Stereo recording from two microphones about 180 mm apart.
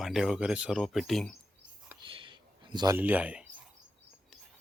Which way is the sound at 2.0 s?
30° right (ahead or behind).